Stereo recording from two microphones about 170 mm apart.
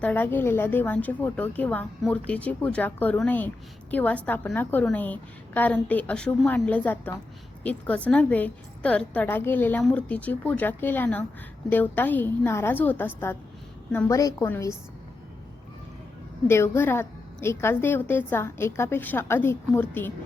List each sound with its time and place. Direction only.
0.0 s a woman's voice: 10° left (ahead or behind)
16.5 s a woman's voice: 15° left (ahead or behind)